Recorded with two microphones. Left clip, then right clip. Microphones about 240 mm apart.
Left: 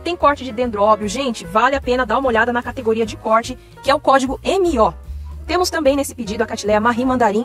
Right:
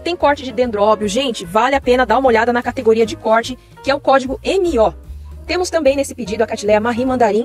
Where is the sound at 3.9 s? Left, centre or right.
Centre.